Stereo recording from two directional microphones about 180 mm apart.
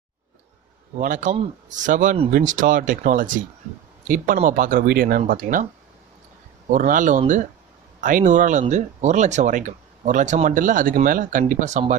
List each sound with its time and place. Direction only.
0.9 s speech: 45° right (ahead or behind)
6.7 s speech: 45° right (ahead or behind)